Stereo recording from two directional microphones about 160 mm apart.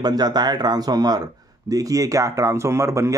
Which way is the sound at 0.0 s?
25° right (ahead or behind).